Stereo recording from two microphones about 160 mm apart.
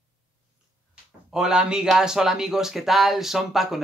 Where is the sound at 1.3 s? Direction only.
5° right (ahead or behind).